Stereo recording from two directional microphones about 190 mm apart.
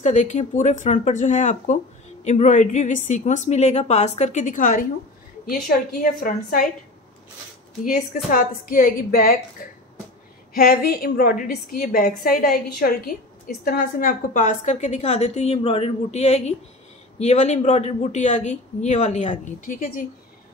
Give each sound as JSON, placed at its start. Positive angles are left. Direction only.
{"t": 0.0, "sound": "a woman's voice", "side_deg": 40}
{"t": 7.8, "sound": "a woman's voice", "side_deg": 45}